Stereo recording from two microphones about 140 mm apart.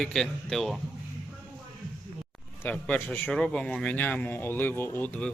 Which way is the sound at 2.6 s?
10° left (ahead or behind).